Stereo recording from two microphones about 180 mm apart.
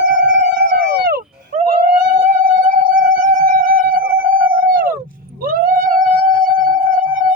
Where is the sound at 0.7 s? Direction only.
60° right (ahead or behind).